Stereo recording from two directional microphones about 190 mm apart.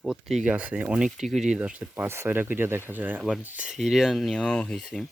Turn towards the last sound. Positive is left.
turn(degrees=0)  # may be behind; listen again after turning